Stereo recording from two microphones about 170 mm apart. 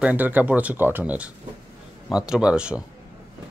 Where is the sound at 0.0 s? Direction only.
10° right (ahead or behind).